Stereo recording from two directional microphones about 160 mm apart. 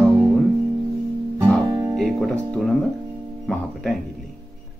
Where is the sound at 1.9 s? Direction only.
Centre (ahead or behind).